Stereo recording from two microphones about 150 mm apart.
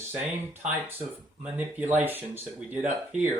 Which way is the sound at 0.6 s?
10° right (ahead or behind).